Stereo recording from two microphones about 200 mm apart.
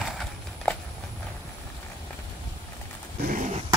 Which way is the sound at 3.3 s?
40° right (ahead or behind).